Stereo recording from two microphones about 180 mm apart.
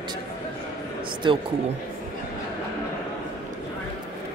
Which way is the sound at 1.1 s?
25° right (ahead or behind).